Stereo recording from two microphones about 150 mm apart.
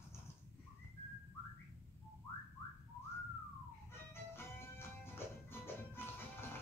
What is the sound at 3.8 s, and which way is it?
Music, 15° left (ahead or behind).